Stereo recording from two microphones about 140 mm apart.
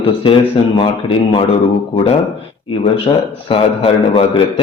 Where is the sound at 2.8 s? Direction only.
40° left (ahead or behind).